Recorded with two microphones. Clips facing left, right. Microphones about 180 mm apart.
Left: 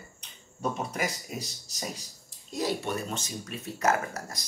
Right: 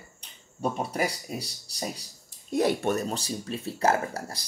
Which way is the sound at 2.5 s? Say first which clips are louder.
Right 6 dB; 60° right (ahead or behind).